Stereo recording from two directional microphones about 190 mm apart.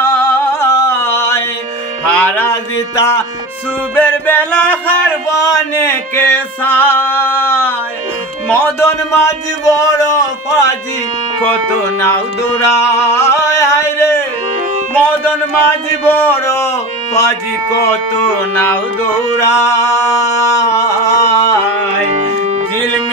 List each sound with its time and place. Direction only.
0.0 s music: 10° left (ahead or behind)
2.1 s a sound: 10° left (ahead or behind)
3.9 s music: 10° left (ahead or behind)
8.5 s speech: 10° left (ahead or behind)
12.6 s music: 15° left (ahead or behind)
16.1 s speech: 10° left (ahead or behind)
18.5 s male singing: 10° left (ahead or behind)
20.7 s a sound: 15° left (ahead or behind)
22.0 s music: 35° right (ahead or behind)